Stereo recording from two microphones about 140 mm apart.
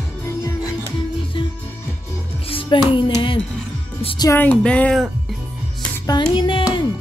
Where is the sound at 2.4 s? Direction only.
40° left (ahead or behind).